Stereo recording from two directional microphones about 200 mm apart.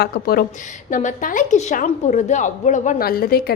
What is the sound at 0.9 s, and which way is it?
A woman's voice, 40° left (ahead or behind).